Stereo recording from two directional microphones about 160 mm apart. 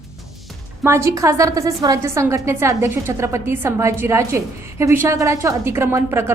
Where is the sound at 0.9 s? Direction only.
15° right (ahead or behind).